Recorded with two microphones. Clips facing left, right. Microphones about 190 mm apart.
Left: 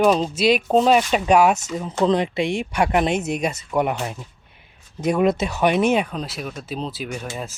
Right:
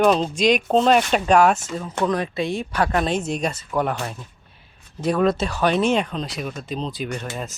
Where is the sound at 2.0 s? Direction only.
20° left (ahead or behind); by 7.0 s 5° left (ahead or behind).